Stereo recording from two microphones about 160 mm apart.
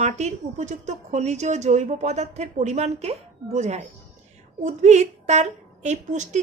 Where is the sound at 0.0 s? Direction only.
50° right (ahead or behind).